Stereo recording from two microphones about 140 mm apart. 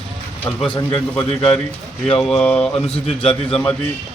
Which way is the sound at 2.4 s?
10° left (ahead or behind).